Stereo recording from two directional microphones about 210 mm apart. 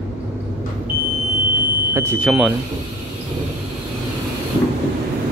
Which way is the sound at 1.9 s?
10° right (ahead or behind).